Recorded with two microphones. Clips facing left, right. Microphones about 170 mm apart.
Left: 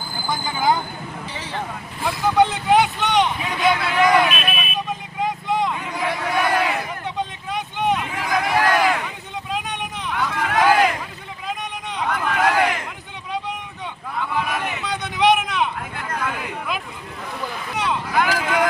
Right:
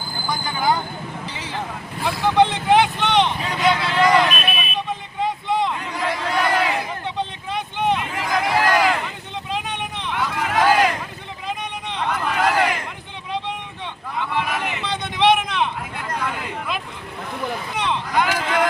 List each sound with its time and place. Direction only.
0.3 s speech: 20° left (ahead or behind)
2.0 s vehicle: centre (ahead or behind)
5.5 s a sound: centre (ahead or behind)
11.4 s vehicle: centre (ahead or behind)
14.2 s vehicle: centre (ahead or behind)
14.7 s a sound: centre (ahead or behind)
17.7 s vehicle: 5° left (ahead or behind)